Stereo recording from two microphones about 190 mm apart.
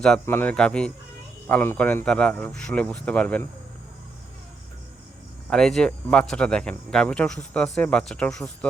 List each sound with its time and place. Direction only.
0.0 s speech: 10° left (ahead or behind)
5.5 s speech: 5° left (ahead or behind)